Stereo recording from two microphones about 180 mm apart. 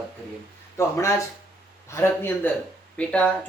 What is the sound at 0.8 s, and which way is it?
Speech, 15° left (ahead or behind).